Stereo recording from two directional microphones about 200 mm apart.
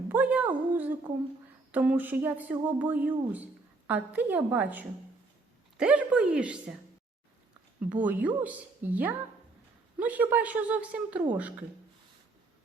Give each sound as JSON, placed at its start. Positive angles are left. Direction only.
{"t": 0.1, "sound": "a woman's voice", "side_deg": -10}
{"t": 7.9, "sound": "speech", "side_deg": -10}